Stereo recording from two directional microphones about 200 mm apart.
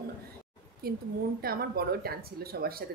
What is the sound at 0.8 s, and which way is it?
A woman's voice, 50° right (ahead or behind).